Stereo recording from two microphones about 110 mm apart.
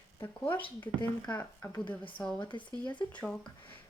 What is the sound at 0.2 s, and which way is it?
Speech, 15° left (ahead or behind).